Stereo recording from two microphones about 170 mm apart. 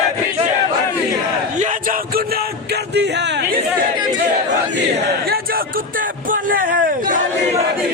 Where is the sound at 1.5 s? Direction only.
50° right (ahead or behind).